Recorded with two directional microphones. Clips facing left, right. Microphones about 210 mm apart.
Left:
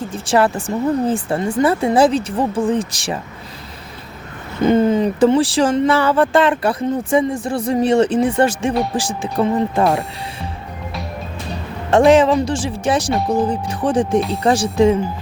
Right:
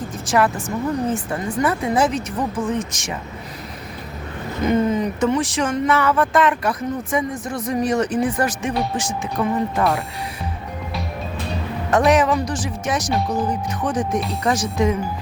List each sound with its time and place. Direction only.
0.1 s speech: 30° left (ahead or behind)
4.6 s speech: 30° left (ahead or behind)
11.9 s speech: 25° left (ahead or behind)